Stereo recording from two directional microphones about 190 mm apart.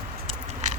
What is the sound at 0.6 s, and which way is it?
Biting, 40° right (ahead or behind).